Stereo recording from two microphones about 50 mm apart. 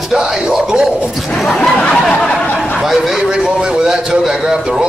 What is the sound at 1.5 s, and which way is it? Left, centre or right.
Speech, centre.